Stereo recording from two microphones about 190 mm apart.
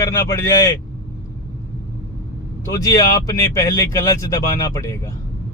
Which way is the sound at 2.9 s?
15° left (ahead or behind).